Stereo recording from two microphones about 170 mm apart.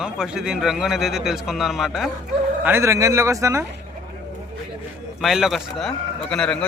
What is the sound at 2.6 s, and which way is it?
Speech, 15° right (ahead or behind).